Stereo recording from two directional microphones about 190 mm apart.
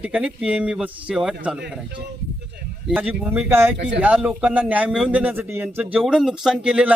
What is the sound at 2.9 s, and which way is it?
A man's voice, 5° right (ahead or behind).